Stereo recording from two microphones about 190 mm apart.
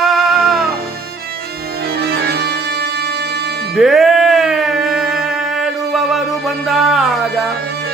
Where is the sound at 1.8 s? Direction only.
55° right (ahead or behind).